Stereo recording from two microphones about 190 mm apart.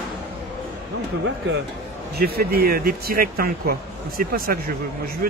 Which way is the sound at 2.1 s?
55° right (ahead or behind).